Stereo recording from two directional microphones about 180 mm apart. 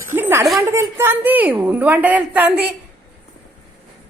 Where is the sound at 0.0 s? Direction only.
15° right (ahead or behind).